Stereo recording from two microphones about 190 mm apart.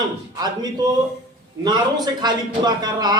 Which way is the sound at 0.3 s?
20° right (ahead or behind).